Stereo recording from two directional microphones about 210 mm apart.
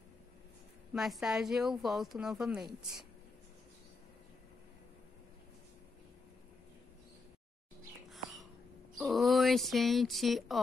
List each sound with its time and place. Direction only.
0.9 s a woman's voice: centre (ahead or behind)
8.9 s a woman's voice: centre (ahead or behind)